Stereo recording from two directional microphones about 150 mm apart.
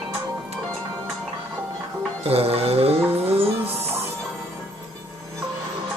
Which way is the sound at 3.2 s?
40° right (ahead or behind).